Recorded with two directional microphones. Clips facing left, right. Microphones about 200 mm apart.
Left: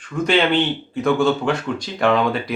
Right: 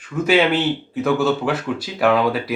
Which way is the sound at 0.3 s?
5° right (ahead or behind).